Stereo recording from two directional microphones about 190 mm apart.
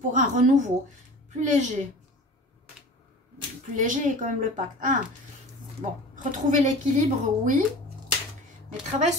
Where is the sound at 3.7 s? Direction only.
40° right (ahead or behind).